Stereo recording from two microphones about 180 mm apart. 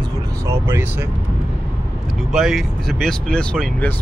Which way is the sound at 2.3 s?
Centre (ahead or behind).